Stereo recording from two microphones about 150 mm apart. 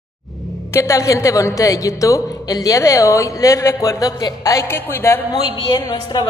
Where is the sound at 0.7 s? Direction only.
20° left (ahead or behind).